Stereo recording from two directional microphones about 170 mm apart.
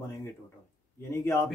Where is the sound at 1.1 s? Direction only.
15° left (ahead or behind).